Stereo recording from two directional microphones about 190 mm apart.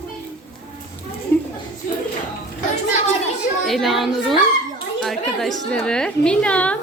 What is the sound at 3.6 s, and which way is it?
A woman's voice, centre (ahead or behind).